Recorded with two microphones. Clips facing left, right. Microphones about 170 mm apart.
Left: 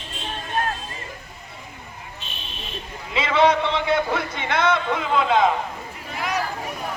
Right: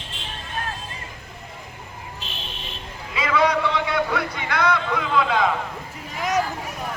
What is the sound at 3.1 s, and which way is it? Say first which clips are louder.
A man's voice: left 2 dB; 25° left (ahead or behind).